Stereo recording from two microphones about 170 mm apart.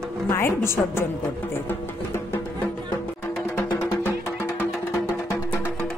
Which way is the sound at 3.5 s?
15° left (ahead or behind).